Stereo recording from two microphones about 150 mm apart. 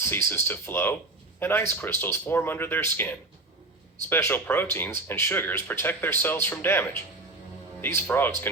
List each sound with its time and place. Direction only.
0.1 s speech: 15° left (ahead or behind)